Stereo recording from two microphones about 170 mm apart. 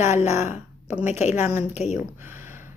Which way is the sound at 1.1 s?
40° left (ahead or behind).